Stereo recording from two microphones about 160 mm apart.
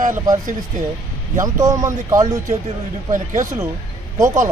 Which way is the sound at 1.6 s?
20° right (ahead or behind).